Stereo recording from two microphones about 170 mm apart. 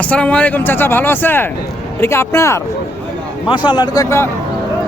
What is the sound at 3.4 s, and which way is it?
Speech, 25° left (ahead or behind).